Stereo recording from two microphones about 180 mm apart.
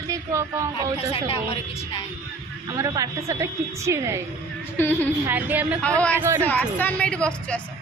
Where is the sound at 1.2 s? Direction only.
30° left (ahead or behind).